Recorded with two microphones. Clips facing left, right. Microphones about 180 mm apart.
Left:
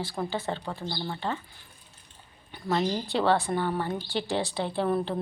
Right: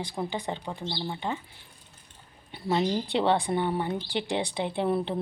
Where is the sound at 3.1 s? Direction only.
20° right (ahead or behind).